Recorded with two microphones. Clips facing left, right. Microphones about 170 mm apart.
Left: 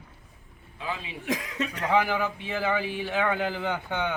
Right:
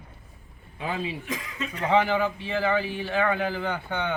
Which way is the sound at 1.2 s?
75° left (ahead or behind).